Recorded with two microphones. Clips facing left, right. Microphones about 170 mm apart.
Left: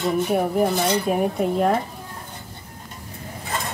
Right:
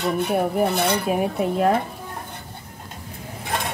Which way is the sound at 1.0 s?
Centre (ahead or behind).